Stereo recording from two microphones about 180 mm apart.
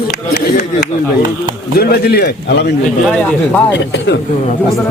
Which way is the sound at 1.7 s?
60° left (ahead or behind).